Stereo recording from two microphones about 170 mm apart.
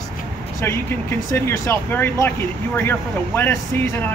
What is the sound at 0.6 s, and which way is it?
Speech, 15° left (ahead or behind).